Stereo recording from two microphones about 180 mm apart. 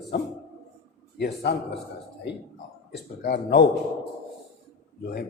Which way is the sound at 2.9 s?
65° left (ahead or behind).